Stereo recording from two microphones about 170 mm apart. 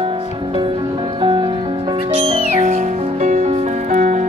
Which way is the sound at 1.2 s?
30° right (ahead or behind).